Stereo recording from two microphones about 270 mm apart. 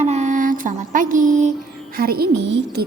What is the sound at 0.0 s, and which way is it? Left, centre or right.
Music, right.